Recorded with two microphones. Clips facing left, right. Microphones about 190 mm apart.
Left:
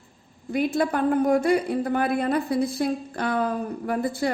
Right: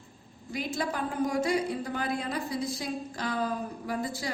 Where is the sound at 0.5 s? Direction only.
60° left (ahead or behind).